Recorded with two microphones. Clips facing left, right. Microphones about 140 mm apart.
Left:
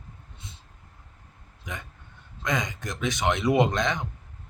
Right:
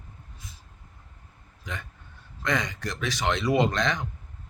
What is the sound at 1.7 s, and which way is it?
Speech, 20° left (ahead or behind).